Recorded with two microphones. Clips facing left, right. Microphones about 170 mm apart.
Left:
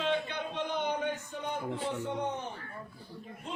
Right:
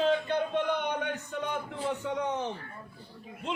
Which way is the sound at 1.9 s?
85° right.